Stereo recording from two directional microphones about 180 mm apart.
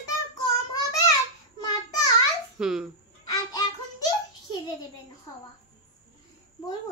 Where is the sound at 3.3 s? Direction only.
20° left (ahead or behind).